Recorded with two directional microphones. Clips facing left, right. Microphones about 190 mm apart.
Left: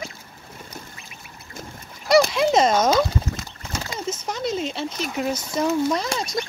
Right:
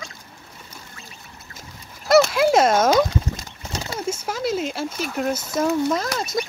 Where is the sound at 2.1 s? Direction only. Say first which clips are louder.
Right 2 dB; 5° right (ahead or behind).